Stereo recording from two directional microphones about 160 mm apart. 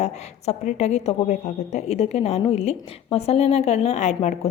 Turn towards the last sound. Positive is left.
turn(degrees=45)  # may be behind; listen again after turning